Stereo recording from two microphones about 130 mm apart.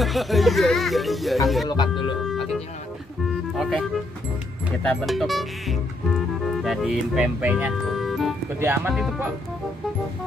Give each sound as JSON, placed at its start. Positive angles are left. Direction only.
{"t": 0.0, "sound": "speech", "side_deg": 0}
{"t": 1.7, "sound": "speech", "side_deg": 35}
{"t": 3.5, "sound": "music", "side_deg": -5}
{"t": 5.0, "sound": "speech", "side_deg": 0}
{"t": 7.4, "sound": "music", "side_deg": -10}
{"t": 8.5, "sound": "speech", "side_deg": -20}